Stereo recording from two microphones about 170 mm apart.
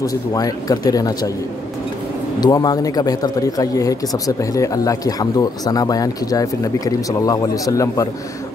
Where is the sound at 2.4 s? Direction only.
20° left (ahead or behind).